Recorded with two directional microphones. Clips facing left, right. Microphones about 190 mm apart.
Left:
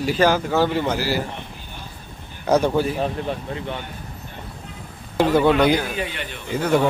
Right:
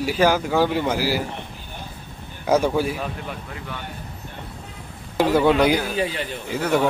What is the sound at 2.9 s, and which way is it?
Speech, 30° left (ahead or behind).